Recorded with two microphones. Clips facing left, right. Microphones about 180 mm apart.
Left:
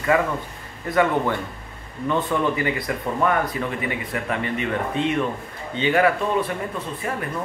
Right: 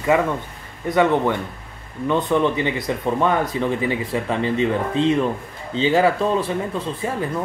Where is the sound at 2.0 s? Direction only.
25° right (ahead or behind).